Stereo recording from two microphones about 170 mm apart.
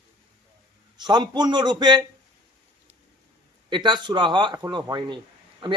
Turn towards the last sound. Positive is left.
turn(degrees=-25)  # may be behind; listen again after turning